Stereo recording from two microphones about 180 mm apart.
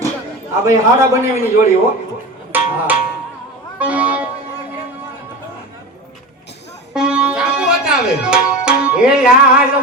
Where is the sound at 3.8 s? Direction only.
5° right (ahead or behind).